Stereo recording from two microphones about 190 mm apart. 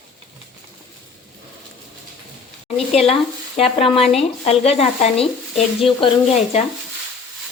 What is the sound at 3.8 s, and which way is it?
Speech, 30° left (ahead or behind).